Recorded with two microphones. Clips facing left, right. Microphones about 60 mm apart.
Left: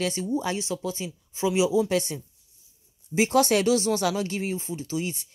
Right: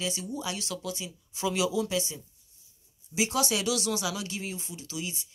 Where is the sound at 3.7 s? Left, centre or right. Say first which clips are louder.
Left 7 dB; left.